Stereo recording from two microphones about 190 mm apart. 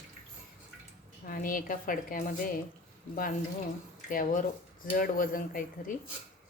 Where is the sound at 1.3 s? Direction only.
45° left (ahead or behind).